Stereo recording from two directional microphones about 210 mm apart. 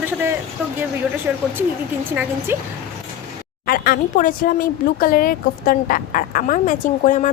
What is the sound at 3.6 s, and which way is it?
Speech, 45° left (ahead or behind).